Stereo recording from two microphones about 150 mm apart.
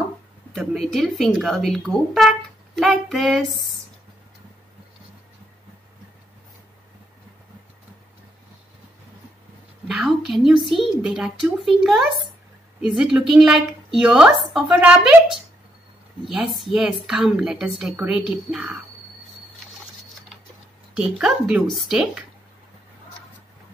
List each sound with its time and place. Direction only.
0.6 s a woman's voice: centre (ahead or behind)
9.8 s a woman's voice: centre (ahead or behind)
20.9 s a woman's voice: 5° right (ahead or behind)